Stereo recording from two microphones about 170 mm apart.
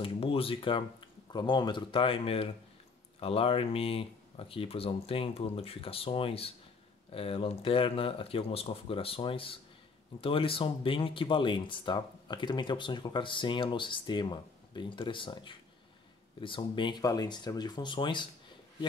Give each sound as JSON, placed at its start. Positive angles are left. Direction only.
{"t": 0.0, "sound": "speech", "side_deg": 35}